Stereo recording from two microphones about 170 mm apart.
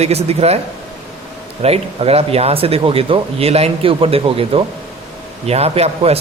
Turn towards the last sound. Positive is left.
turn(degrees=-35)  # may be behind; listen again after turning